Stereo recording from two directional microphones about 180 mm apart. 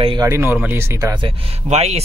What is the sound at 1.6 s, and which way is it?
Speech, 35° right (ahead or behind).